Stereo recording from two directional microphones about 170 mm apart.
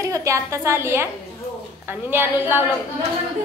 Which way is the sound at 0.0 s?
20° right (ahead or behind).